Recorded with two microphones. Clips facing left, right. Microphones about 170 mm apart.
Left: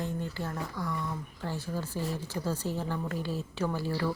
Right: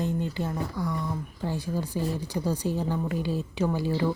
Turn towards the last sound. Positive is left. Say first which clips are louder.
# right 5 dB
turn(degrees=-20)  # may be behind; listen again after turning